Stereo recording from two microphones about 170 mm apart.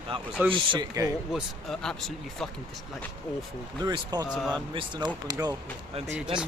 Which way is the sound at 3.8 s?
25° right (ahead or behind).